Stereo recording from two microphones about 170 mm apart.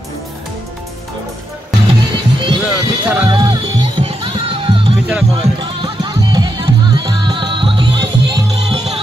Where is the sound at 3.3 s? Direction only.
30° right (ahead or behind).